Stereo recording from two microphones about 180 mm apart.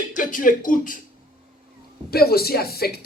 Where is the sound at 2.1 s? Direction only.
60° left (ahead or behind).